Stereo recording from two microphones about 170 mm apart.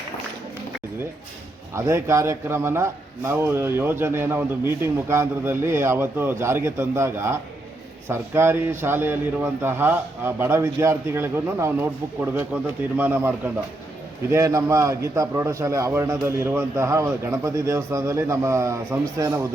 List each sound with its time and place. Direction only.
1.7 s a man's voice: 15° right (ahead or behind)